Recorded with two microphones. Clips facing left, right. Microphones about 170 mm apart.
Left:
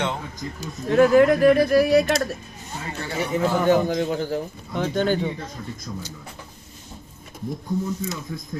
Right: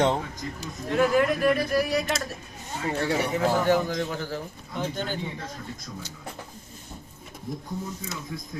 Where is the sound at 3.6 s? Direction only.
20° left (ahead or behind).